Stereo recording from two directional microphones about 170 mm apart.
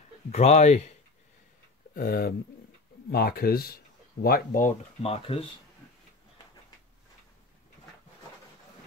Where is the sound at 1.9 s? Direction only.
60° left (ahead or behind).